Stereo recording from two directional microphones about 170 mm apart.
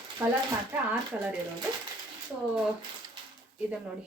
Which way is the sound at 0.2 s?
10° right (ahead or behind).